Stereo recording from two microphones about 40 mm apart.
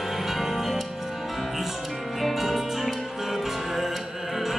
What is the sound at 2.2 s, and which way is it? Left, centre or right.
Music, centre.